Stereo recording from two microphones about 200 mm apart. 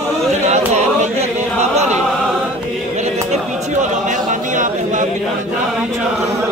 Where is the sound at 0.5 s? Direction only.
35° right (ahead or behind).